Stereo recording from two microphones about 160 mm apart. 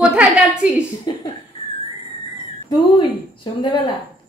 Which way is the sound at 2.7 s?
30° left (ahead or behind).